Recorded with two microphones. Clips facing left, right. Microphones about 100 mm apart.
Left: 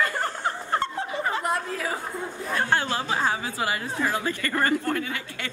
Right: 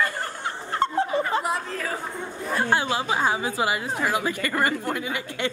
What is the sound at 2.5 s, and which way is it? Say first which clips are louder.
A woman's voice: right 2 dB; 15° right (ahead or behind).